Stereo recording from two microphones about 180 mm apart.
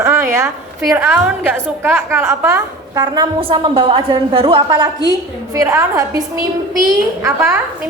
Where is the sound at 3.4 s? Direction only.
30° right (ahead or behind).